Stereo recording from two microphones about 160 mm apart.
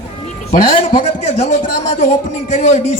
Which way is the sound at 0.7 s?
60° left (ahead or behind).